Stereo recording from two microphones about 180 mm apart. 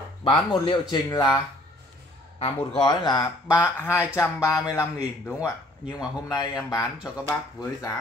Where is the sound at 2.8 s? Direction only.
25° left (ahead or behind).